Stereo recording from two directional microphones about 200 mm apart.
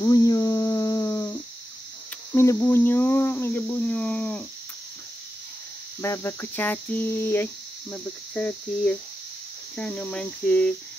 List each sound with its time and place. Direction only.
0.0 s a sound: 20° left (ahead or behind)
2.3 s speech: 10° left (ahead or behind)
5.9 s speech: 10° left (ahead or behind)
7.9 s cricket: 5° left (ahead or behind)